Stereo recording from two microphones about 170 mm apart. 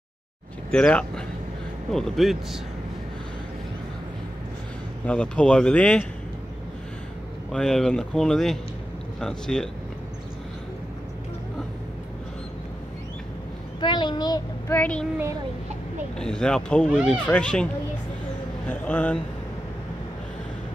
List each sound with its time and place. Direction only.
0.7 s speech: 5° left (ahead or behind)
5.0 s speech: 5° left (ahead or behind)
7.5 s speech: 5° left (ahead or behind)
13.7 s a sound: 25° left (ahead or behind)
14.7 s speech: 10° left (ahead or behind)
16.2 s speech: 5° left (ahead or behind)
18.7 s speech: 10° left (ahead or behind)